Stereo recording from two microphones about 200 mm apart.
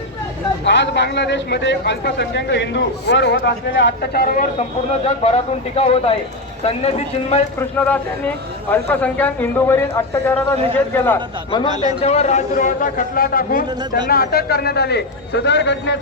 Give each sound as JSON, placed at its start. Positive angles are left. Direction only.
{"t": 0.6, "sound": "a man's voice", "side_deg": 65}
{"t": 4.9, "sound": "a man's voice", "side_deg": 30}
{"t": 8.7, "sound": "speech", "side_deg": 10}
{"t": 12.0, "sound": "a man's voice", "side_deg": 35}